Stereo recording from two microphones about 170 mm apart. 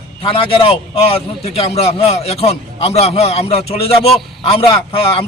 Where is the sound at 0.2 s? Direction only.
35° left (ahead or behind).